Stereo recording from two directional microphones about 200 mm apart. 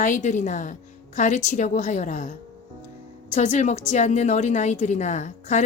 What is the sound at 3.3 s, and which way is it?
A woman's voice, 35° left (ahead or behind).